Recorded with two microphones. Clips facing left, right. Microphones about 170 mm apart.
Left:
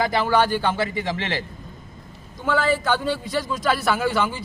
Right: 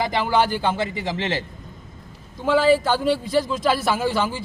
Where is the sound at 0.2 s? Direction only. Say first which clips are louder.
Right 1 dB; 20° right (ahead or behind).